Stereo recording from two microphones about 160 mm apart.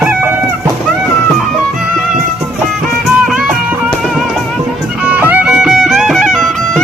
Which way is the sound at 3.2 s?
5° right (ahead or behind).